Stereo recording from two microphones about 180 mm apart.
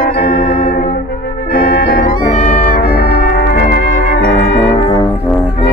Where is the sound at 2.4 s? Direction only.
40° left (ahead or behind).